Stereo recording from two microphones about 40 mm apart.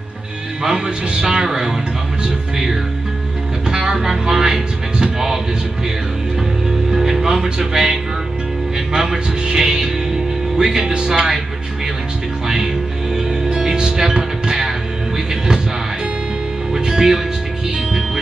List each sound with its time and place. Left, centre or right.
0.7 s speech: right
3.6 s music: right
6.9 s music: centre
7.4 s a man's voice: centre
13.1 s music: centre
16.7 s music: centre